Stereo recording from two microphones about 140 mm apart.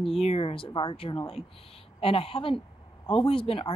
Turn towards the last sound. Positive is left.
turn(degrees=40)  # may be behind; listen again after turning